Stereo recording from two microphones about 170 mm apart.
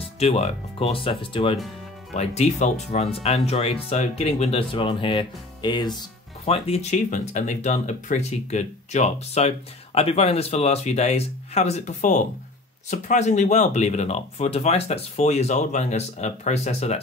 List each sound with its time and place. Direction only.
0.2 s speech: 35° left (ahead or behind)
6.4 s speech: 35° left (ahead or behind)